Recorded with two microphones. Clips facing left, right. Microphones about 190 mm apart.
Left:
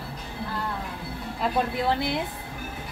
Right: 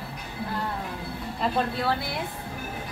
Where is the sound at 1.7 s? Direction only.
20° left (ahead or behind).